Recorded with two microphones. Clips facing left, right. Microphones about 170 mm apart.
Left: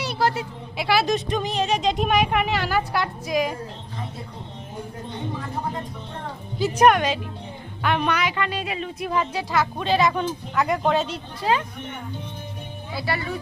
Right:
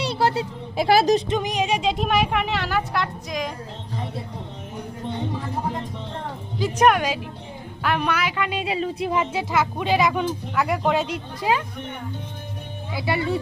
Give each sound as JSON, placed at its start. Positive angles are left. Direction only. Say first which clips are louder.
{"t": 0.0, "sound": "a sound", "louder": "right 2 dB", "side_deg": -25}
{"t": 0.8, "sound": "speech", "louder": "right 4 dB", "side_deg": -45}
{"t": 1.3, "sound": "speech", "louder": "right 1 dB", "side_deg": -15}
{"t": 6.6, "sound": "speech", "louder": "left 1 dB", "side_deg": 0}
{"t": 8.4, "sound": "speech", "louder": "right 3 dB", "side_deg": -25}
{"t": 12.9, "sound": "speech", "louder": "right 4 dB", "side_deg": -20}